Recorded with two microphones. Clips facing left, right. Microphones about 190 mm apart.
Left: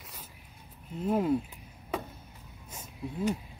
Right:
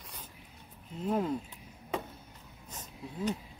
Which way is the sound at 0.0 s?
5° left (ahead or behind).